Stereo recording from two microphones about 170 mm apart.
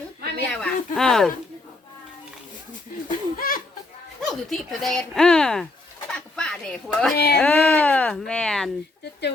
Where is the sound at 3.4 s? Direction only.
60° left (ahead or behind).